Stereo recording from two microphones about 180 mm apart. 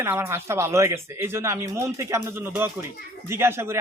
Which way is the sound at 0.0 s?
15° right (ahead or behind).